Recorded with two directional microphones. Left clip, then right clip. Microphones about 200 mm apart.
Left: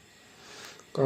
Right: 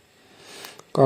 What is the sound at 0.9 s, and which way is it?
Speech, 35° right (ahead or behind).